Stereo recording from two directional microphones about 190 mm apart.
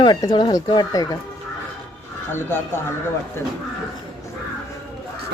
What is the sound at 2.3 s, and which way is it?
Speech, 10° left (ahead or behind).